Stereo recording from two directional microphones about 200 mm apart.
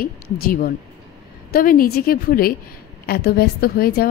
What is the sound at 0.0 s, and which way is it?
A woman's voice, 45° left (ahead or behind).